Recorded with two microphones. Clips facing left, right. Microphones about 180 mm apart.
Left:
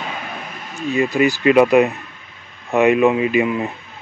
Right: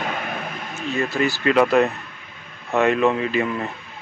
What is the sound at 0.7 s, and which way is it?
Speech, 15° left (ahead or behind).